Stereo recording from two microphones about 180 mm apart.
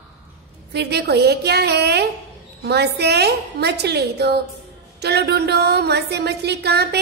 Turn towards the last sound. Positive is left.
turn(degrees=-65)  # may be behind; listen again after turning